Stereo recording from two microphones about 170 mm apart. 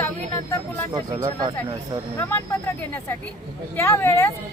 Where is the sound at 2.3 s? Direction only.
15° left (ahead or behind).